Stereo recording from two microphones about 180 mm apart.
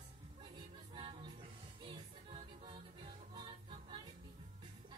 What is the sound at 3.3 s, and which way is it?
Music, 25° right (ahead or behind).